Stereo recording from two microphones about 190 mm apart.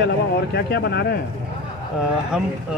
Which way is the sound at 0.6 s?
60° left (ahead or behind).